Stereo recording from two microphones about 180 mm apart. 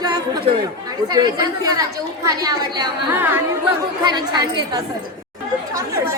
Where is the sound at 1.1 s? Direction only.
20° right (ahead or behind).